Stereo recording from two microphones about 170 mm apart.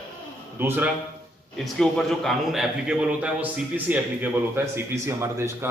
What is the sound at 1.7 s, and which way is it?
A man's voice, centre (ahead or behind).